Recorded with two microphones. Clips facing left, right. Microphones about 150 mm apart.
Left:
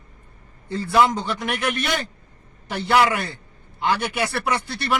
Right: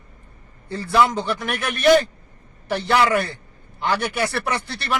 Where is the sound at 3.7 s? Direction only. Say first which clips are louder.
Even; 15° left (ahead or behind).